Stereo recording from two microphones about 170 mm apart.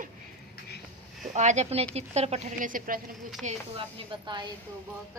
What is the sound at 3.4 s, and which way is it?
Speech, 40° right (ahead or behind).